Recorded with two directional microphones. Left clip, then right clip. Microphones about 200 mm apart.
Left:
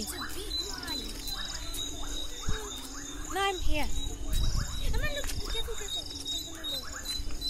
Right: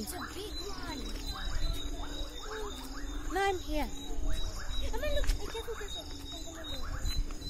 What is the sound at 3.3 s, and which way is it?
Speech, 15° right (ahead or behind).